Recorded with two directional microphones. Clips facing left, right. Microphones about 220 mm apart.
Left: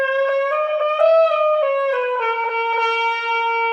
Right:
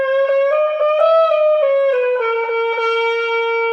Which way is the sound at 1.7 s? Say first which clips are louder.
Right 5 dB; 40° right (ahead or behind).